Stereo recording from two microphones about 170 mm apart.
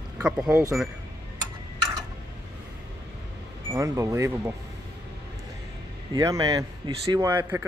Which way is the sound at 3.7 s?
20° right (ahead or behind).